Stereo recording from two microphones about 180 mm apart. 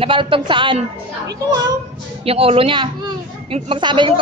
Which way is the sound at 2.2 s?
30° right (ahead or behind).